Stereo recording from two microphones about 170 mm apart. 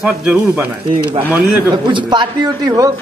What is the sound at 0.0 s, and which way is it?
Speech, 5° right (ahead or behind).